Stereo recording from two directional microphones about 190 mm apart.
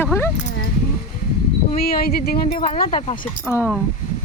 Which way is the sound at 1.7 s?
50° left (ahead or behind).